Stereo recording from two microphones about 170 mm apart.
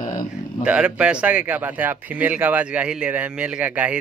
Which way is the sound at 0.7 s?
5° right (ahead or behind).